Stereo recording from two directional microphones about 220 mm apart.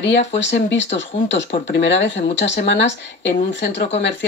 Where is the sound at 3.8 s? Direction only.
30° left (ahead or behind).